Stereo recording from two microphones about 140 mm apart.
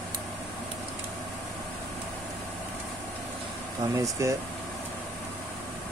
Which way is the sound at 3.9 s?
25° right (ahead or behind).